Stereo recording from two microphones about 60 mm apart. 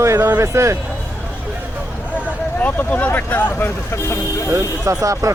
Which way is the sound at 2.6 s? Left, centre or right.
Left.